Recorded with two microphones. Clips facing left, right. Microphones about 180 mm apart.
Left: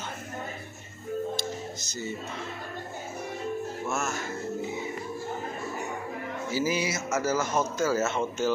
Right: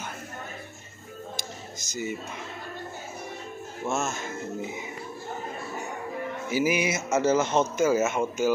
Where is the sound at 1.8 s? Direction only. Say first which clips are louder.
Right 2 dB; 50° right (ahead or behind).